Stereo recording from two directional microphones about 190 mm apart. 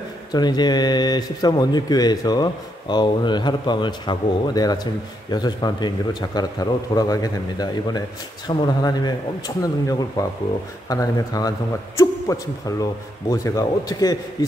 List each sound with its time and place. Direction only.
0.3 s a man's voice: 20° left (ahead or behind)